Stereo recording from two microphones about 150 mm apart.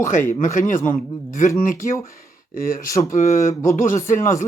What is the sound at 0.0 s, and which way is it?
Speech, 55° left (ahead or behind).